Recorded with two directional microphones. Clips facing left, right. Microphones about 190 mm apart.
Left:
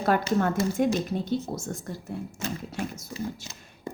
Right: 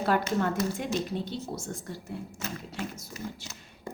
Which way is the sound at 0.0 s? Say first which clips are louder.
Left 3 dB; 50° left (ahead or behind).